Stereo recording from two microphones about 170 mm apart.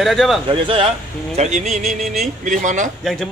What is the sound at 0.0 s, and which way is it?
Speech, centre (ahead or behind).